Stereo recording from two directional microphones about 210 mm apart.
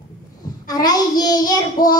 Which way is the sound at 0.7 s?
20° left (ahead or behind).